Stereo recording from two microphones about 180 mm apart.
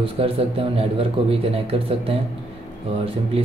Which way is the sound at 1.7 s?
35° right (ahead or behind).